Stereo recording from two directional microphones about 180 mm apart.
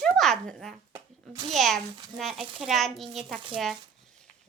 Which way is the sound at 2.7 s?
Centre (ahead or behind).